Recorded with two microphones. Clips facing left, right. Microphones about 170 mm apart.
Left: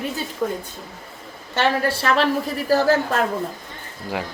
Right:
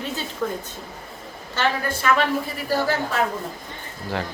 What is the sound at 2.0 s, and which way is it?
Speech, 35° left (ahead or behind).